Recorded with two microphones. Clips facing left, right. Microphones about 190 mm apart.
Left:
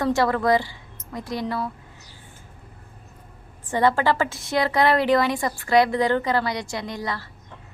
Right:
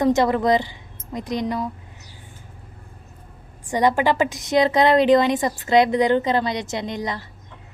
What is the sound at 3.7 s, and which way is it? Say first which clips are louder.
Speech: right 1 dB; 15° right (ahead or behind).